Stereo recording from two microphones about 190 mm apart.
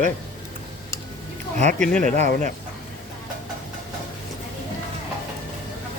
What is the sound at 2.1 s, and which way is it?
Speech, 35° right (ahead or behind).